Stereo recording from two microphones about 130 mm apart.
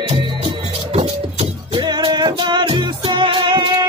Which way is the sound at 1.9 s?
35° right (ahead or behind).